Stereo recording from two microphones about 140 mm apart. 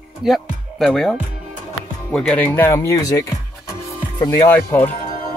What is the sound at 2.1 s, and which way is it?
Speech, 10° left (ahead or behind).